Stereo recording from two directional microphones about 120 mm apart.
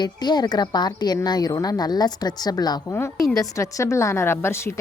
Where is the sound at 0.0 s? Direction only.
35° left (ahead or behind).